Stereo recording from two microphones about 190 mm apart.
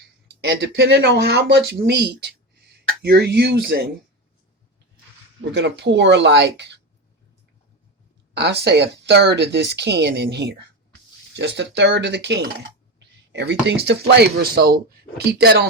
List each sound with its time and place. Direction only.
0.4 s speech: 60° right (ahead or behind)
5.5 s speech: 65° right (ahead or behind)
8.3 s speech: 60° right (ahead or behind)